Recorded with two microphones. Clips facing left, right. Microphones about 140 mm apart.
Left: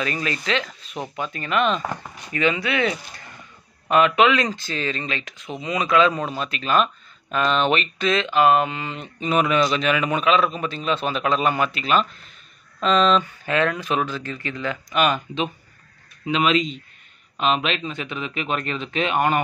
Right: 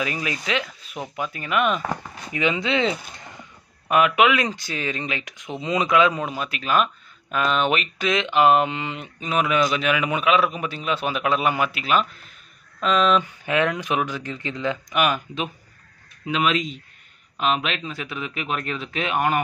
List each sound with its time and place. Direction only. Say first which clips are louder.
0.0 s speech: left 1 dB; 10° right (ahead or behind)
3.9 s speech: left 1 dB; 10° right (ahead or behind)
9.2 s speech: left 2 dB; centre (ahead or behind)